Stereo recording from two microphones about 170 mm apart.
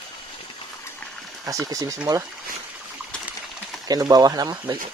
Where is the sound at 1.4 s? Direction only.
20° right (ahead or behind).